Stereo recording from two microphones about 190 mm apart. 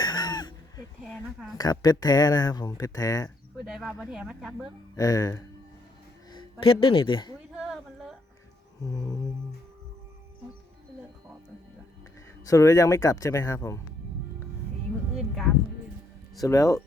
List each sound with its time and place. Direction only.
0.0 s a sound: 20° left (ahead or behind)
1.0 s speech: centre (ahead or behind)
1.5 s speech: 20° left (ahead or behind)
3.7 s speech: 5° right (ahead or behind)
4.9 s speech: 20° left (ahead or behind)
7.5 s a sound: centre (ahead or behind)
8.8 s speech: 20° left (ahead or behind)
12.5 s speech: 15° left (ahead or behind)
16.4 s speech: 15° left (ahead or behind)